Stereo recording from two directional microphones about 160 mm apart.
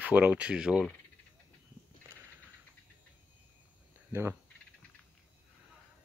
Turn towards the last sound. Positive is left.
turn(degrees=-15)  # may be behind; listen again after turning